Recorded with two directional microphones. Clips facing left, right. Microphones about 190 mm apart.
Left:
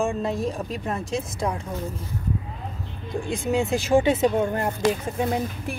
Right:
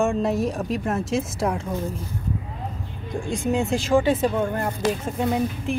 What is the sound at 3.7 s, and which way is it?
Speech, 20° left (ahead or behind).